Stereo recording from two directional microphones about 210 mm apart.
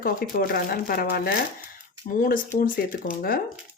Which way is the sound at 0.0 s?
45° left (ahead or behind).